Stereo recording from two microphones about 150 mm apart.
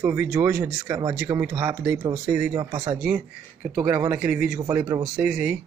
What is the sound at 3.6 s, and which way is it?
Speech, 10° right (ahead or behind).